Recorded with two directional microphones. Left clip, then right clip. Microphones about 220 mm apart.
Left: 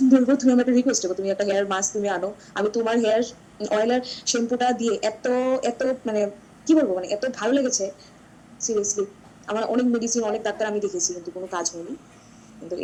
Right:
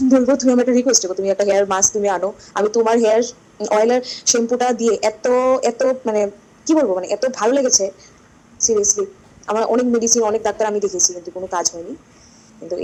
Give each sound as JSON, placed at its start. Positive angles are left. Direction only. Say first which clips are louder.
{"t": 0.1, "sound": "a woman's voice", "louder": "right 4 dB", "side_deg": -35}